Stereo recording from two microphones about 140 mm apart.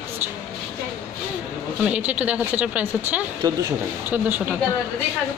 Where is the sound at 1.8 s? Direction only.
10° right (ahead or behind).